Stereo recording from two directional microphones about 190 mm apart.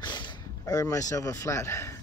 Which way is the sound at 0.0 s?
25° left (ahead or behind).